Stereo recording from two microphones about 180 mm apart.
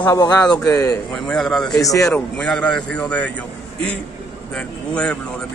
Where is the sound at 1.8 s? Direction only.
20° left (ahead or behind).